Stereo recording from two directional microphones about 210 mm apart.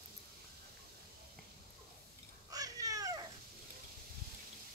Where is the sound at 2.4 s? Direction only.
15° right (ahead or behind).